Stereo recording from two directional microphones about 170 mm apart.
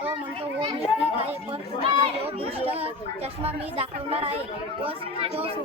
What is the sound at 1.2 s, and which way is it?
A child's voice, 35° right (ahead or behind).